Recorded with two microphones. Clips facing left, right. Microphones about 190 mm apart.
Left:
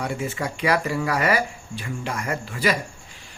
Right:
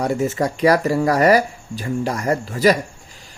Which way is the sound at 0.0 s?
40° right (ahead or behind).